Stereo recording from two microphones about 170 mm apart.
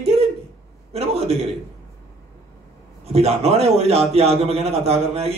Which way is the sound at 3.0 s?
35° right (ahead or behind).